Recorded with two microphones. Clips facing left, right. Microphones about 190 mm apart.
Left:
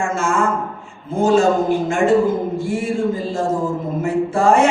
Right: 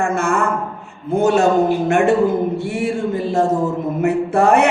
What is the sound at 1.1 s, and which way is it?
Speech, 65° right (ahead or behind).